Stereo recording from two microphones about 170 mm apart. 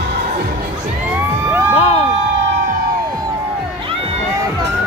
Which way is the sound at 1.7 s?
35° left (ahead or behind).